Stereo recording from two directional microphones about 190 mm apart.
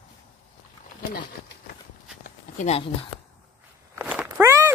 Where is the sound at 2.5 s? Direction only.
35° left (ahead or behind).